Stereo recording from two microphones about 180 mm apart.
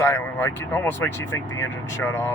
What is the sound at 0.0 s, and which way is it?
Speech, 10° left (ahead or behind).